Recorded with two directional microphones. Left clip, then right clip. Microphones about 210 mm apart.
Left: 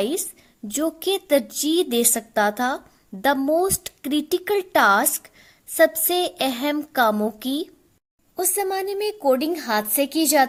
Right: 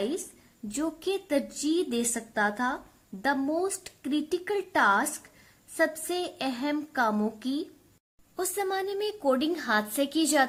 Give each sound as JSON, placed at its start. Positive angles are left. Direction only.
{"t": 0.7, "sound": "a woman's voice", "side_deg": 35}
{"t": 8.4, "sound": "a woman's voice", "side_deg": 25}